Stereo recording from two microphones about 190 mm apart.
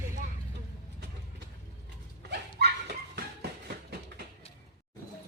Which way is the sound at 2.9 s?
60° right (ahead or behind).